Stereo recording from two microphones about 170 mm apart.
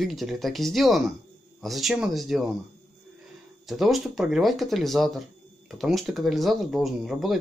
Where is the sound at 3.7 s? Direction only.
Centre (ahead or behind).